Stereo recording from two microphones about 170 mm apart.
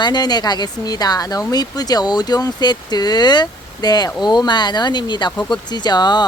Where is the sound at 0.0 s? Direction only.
25° left (ahead or behind).